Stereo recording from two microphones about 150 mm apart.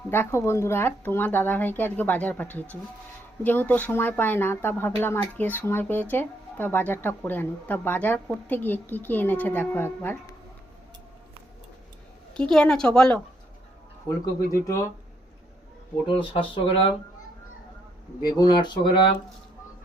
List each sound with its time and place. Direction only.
0.1 s speech: 15° left (ahead or behind)
12.3 s a woman's voice: 5° left (ahead or behind)
14.6 s speech: 20° left (ahead or behind)
16.0 s speech: 35° left (ahead or behind)
18.2 s speech: 25° left (ahead or behind)